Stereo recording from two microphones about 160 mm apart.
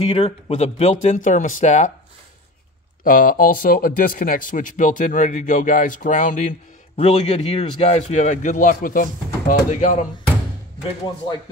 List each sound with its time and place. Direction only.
0.0 s speech: 40° left (ahead or behind)
3.0 s speech: 60° left (ahead or behind)